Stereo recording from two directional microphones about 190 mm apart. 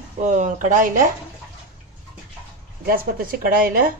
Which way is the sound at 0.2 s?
40° right (ahead or behind).